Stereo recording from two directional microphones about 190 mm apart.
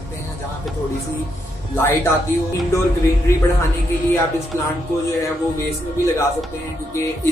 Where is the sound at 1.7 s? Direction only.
10° left (ahead or behind).